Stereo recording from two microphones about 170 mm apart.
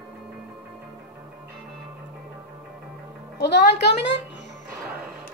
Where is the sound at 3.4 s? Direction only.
85° left.